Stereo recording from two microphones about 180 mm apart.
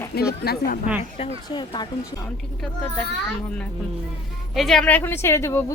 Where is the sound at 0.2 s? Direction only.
60° left (ahead or behind).